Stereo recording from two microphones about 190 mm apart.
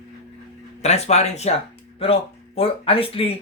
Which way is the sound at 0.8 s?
35° left (ahead or behind).